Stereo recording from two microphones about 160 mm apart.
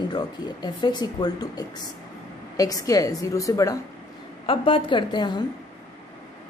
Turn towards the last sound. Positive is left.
turn(degrees=25)  # may be behind; listen again after turning